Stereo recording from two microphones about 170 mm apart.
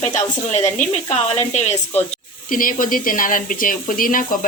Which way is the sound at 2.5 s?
55° left (ahead or behind).